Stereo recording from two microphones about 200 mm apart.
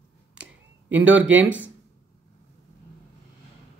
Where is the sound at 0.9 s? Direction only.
10° right (ahead or behind).